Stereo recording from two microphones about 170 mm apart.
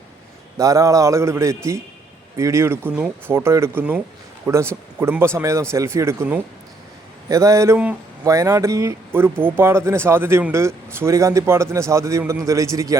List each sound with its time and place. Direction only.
0.6 s speech: 20° right (ahead or behind)